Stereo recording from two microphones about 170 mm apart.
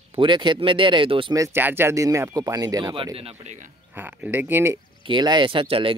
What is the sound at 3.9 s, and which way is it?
Speech, 10° right (ahead or behind).